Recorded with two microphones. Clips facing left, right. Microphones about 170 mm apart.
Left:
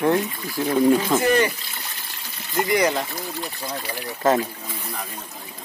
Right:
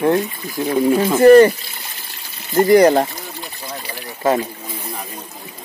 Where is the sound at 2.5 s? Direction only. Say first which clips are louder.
Right 10 dB; 40° right (ahead or behind).